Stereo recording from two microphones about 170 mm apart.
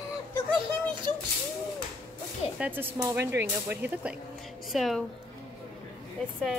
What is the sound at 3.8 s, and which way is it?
A woman's voice, 10° right (ahead or behind).